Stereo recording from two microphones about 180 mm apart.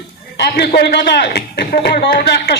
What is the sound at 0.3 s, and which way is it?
A man's voice, 65° left (ahead or behind).